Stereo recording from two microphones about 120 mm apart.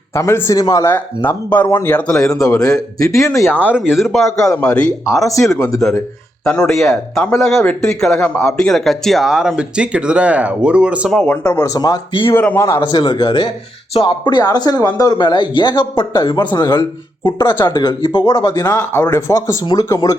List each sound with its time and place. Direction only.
0.1 s speech: 20° left (ahead or behind)
0.9 s speech: 15° left (ahead or behind)
2.3 s speech: 30° left (ahead or behind)
3.6 s speech: 10° right (ahead or behind); by 4.9 s 10° left (ahead or behind)
5.0 s speech: centre (ahead or behind)
5.5 s speech: 25° left (ahead or behind)
6.5 s speech: 5° left (ahead or behind)
11.1 s speech: centre (ahead or behind)
11.6 s speech: 30° left (ahead or behind)
12.3 s speech: 15° left (ahead or behind)
12.8 s speech: 40° left (ahead or behind)
18.7 s speech: 20° left (ahead or behind)